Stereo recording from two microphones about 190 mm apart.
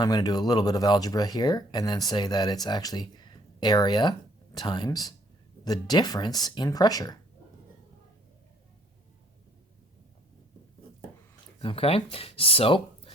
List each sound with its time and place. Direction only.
0.0 s speech: 20° left (ahead or behind)
11.6 s speech: 30° left (ahead or behind)